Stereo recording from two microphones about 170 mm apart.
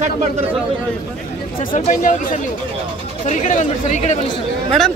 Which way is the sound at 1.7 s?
50° left (ahead or behind).